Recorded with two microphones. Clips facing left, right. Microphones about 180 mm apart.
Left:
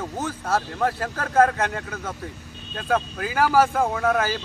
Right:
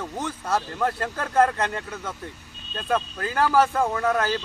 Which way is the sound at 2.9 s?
10° left (ahead or behind).